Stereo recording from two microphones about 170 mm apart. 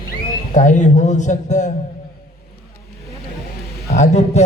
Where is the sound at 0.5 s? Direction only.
45° left (ahead or behind).